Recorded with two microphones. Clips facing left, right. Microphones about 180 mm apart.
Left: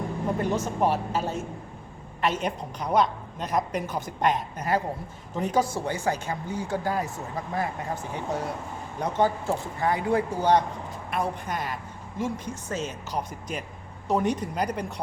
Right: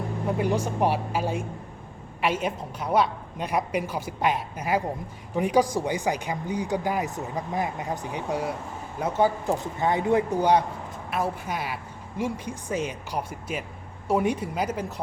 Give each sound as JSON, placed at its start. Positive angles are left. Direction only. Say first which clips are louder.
{"t": 0.3, "sound": "speech", "louder": "right 2 dB", "side_deg": -10}
{"t": 9.8, "sound": "a man's voice", "louder": "right 2 dB", "side_deg": -20}